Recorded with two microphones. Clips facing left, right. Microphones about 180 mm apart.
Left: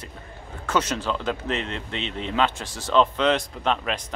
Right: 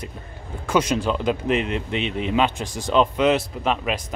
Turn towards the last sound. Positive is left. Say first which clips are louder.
# right 2 dB
turn(degrees=-5)  # may be behind; listen again after turning